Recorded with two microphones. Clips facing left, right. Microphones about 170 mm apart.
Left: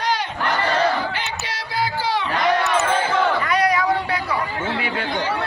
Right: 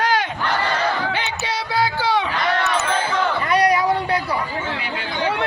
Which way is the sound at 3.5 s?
35° right (ahead or behind).